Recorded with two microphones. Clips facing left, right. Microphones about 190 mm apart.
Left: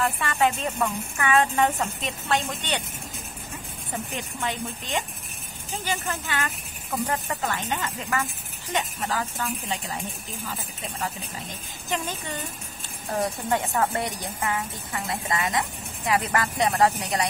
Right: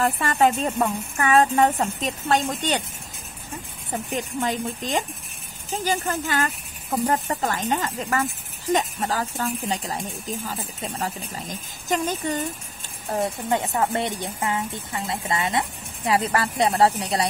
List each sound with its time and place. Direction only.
0.0 s speech: 40° right (ahead or behind)
4.1 s speech: 35° right (ahead or behind)
13.2 s speech: 20° right (ahead or behind)